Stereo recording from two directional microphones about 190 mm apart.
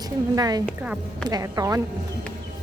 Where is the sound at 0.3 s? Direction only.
20° right (ahead or behind).